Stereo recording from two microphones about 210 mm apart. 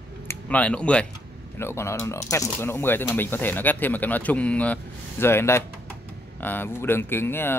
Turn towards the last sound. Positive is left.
turn(degrees=10)  # may be behind; listen again after turning